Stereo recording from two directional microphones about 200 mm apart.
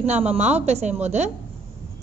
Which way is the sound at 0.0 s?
30° right (ahead or behind).